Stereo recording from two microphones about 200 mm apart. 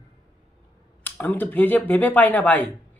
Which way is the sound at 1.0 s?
10° left (ahead or behind).